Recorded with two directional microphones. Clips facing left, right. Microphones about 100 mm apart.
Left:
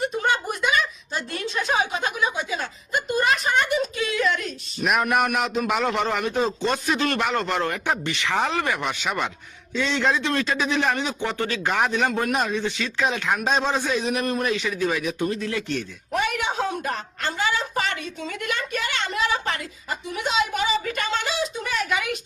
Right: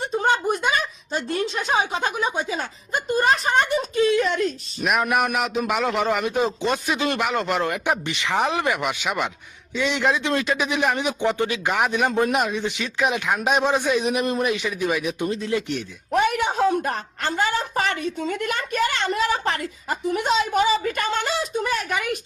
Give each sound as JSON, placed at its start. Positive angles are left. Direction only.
{"t": 0.0, "sound": "a sound", "side_deg": -35}
{"t": 4.8, "sound": "a man's voice", "side_deg": 0}
{"t": 16.1, "sound": "a woman's voice", "side_deg": -45}